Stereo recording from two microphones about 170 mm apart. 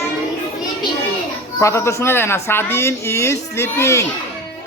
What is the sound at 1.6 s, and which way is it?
Speech, 15° left (ahead or behind).